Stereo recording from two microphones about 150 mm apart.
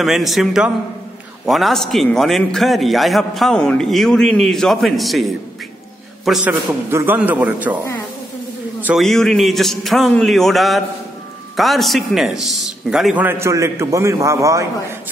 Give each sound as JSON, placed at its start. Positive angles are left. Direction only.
{"t": 0.0, "sound": "a man's voice", "side_deg": 0}
{"t": 6.9, "sound": "a man's voice", "side_deg": -15}
{"t": 8.8, "sound": "a man's voice", "side_deg": 0}